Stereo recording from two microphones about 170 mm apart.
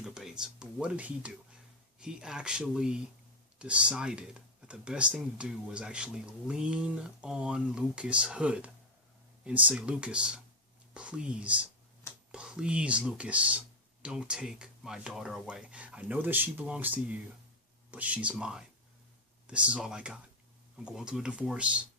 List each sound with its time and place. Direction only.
0.0 s speech: 5° right (ahead or behind)